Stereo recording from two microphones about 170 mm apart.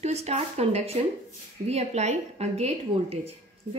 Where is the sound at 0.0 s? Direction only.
40° right (ahead or behind).